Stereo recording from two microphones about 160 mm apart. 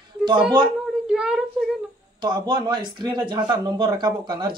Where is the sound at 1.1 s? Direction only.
5° right (ahead or behind).